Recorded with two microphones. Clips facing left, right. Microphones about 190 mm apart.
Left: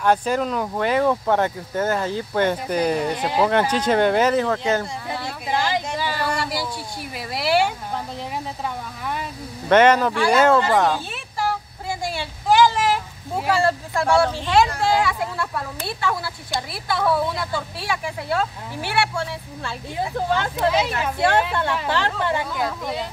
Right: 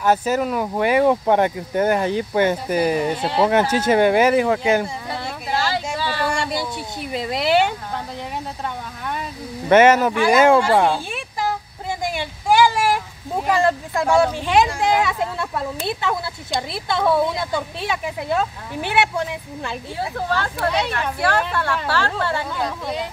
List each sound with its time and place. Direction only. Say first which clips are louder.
0.0 s speech: right 1 dB; 5° right (ahead or behind)
3.2 s speech: right 1 dB; 10° left (ahead or behind)
3.4 s speech: right 3 dB; 10° right (ahead or behind)
5.5 s a sound: even; 15° left (ahead or behind)
6.3 s speech: right 2 dB; 25° right (ahead or behind)
9.7 s speech: right 2 dB; 10° right (ahead or behind)
10.8 s a sound: right 2 dB; 10° right (ahead or behind)
13.5 s speech: right 2 dB; 15° right (ahead or behind)
20.0 s speech: left 2 dB; 15° left (ahead or behind)
20.7 s speech: left 1 dB; 5° left (ahead or behind)
21.8 s speech: even; 20° left (ahead or behind)